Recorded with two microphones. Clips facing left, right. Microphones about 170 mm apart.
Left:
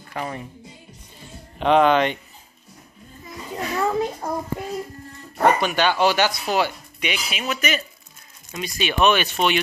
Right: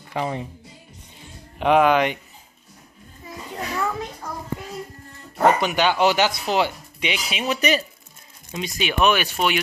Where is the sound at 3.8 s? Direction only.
30° left (ahead or behind).